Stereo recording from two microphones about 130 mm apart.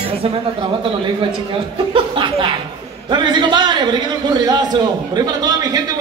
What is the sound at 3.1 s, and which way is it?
A man's voice, 35° right (ahead or behind).